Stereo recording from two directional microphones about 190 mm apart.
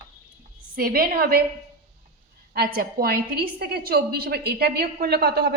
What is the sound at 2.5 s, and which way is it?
Speech, 50° right (ahead or behind).